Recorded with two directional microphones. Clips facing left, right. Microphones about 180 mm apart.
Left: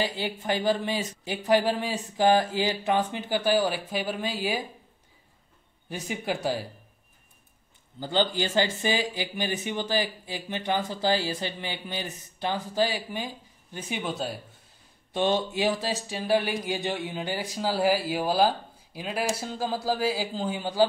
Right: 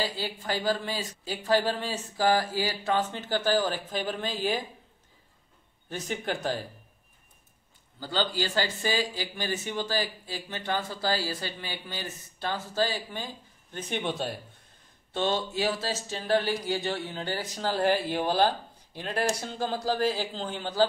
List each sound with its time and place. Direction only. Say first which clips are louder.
0.0 s speech: left 3 dB; 20° left (ahead or behind)
5.9 s speech: left 1 dB; 10° left (ahead or behind)
8.0 s speech: left 3 dB; 20° left (ahead or behind); by 14.4 s centre (ahead or behind)
15.1 s speech: left 3 dB; 15° left (ahead or behind)